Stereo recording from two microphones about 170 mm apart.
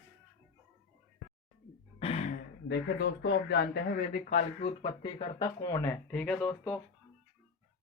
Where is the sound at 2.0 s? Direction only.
35° left (ahead or behind).